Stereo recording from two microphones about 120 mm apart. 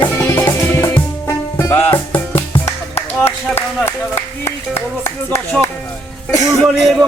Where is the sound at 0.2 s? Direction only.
20° left (ahead or behind).